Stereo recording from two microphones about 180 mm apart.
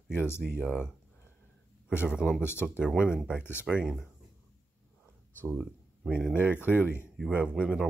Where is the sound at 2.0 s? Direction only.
5° right (ahead or behind).